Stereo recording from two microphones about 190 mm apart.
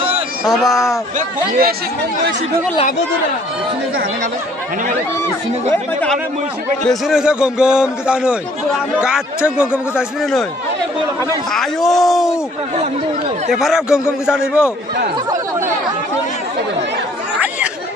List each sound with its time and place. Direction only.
0.5 s a man's voice: centre (ahead or behind)
1.6 s speech: 55° right (ahead or behind)
5.7 s speech: 10° left (ahead or behind)
6.9 s a man's voice: 5° right (ahead or behind)
11.5 s a man's voice: centre (ahead or behind)
13.5 s a man's voice: centre (ahead or behind)